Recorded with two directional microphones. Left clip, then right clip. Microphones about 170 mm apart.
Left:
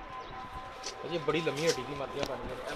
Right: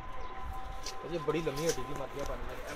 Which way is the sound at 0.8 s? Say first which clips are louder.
Left 2 dB; 20° right (ahead or behind).